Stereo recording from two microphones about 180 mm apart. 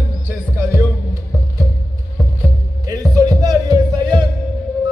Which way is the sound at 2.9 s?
20° right (ahead or behind).